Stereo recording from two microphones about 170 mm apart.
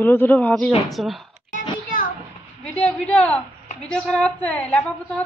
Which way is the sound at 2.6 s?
10° left (ahead or behind).